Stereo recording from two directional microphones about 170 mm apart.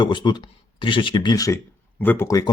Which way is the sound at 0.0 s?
25° left (ahead or behind).